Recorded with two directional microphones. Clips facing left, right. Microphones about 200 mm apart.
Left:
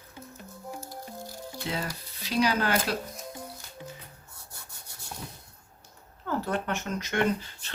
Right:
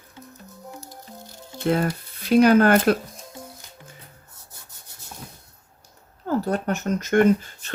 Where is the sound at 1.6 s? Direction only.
55° right (ahead or behind).